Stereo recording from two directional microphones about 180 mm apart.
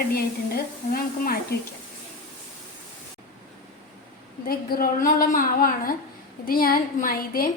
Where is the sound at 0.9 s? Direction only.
55° left (ahead or behind).